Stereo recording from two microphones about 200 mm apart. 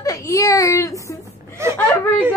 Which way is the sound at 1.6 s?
15° right (ahead or behind).